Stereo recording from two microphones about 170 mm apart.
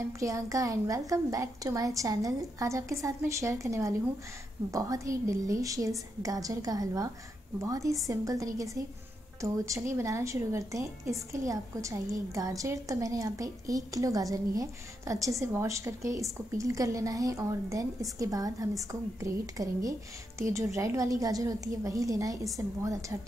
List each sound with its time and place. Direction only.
0.2 s a woman's voice: 20° right (ahead or behind)